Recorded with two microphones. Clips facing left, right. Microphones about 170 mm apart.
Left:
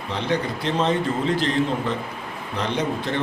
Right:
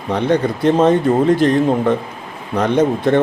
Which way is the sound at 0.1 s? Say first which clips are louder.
Right 9 dB; 50° right (ahead or behind).